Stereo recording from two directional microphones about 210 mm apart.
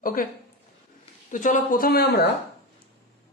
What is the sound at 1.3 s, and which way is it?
Speech, 40° left (ahead or behind).